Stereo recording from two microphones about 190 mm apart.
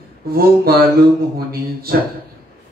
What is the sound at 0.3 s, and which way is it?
Speech, 55° right (ahead or behind).